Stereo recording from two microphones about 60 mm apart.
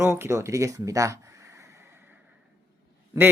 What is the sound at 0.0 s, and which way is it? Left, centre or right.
Speech, right.